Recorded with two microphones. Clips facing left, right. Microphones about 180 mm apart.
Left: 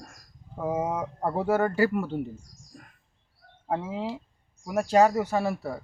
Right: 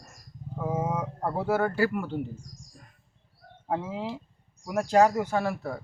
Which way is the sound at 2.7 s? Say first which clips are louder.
Left 4 dB; 65° left (ahead or behind).